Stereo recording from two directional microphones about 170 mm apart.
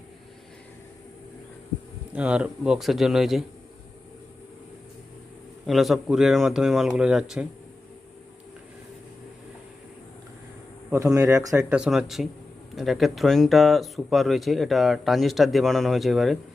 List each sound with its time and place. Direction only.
2.1 s speech: 10° right (ahead or behind)
5.6 s speech: centre (ahead or behind)
10.9 s speech: 20° right (ahead or behind)
11.7 s speech: 5° right (ahead or behind)